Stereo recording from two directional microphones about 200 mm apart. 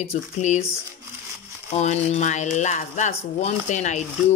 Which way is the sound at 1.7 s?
35° left (ahead or behind).